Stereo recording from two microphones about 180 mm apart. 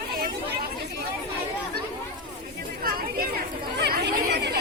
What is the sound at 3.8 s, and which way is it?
Chatter, 65° right (ahead or behind).